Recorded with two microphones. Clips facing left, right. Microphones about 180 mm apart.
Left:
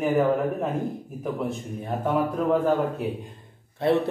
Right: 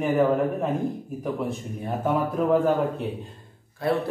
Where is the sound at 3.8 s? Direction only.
25° left (ahead or behind).